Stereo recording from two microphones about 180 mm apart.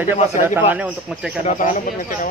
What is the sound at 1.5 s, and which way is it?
Speech, 45° left (ahead or behind).